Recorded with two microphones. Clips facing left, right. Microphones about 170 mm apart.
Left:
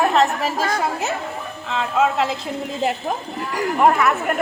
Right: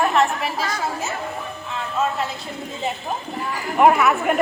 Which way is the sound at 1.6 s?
90° left.